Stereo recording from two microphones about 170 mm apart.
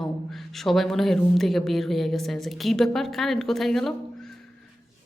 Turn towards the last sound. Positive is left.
turn(degrees=0)  # may be behind; listen again after turning